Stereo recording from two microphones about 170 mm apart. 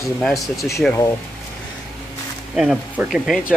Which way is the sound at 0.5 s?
15° left (ahead or behind).